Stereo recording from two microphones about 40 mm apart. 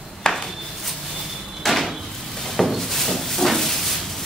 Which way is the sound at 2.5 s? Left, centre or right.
Centre.